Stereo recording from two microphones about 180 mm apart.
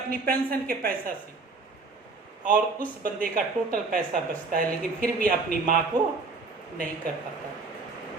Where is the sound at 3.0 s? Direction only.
50° right (ahead or behind).